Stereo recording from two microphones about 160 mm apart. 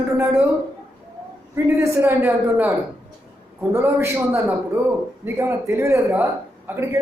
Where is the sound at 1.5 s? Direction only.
15° right (ahead or behind).